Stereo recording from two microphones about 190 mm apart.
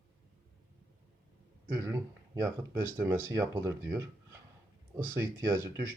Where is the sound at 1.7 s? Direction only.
15° right (ahead or behind).